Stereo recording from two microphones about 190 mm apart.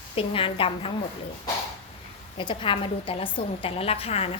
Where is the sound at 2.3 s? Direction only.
25° left (ahead or behind).